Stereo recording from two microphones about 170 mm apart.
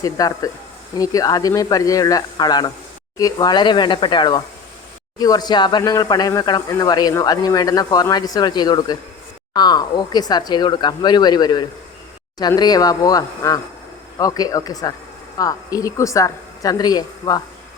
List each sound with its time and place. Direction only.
0.0 s speech: 20° left (ahead or behind)